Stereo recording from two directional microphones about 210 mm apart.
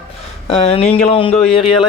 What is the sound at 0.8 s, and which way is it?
Speech, 5° left (ahead or behind).